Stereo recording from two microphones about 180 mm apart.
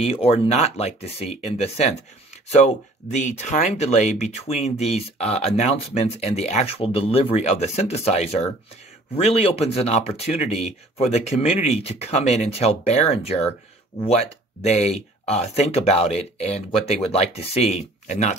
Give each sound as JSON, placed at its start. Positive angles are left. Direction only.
{"t": 0.0, "sound": "speech", "side_deg": 35}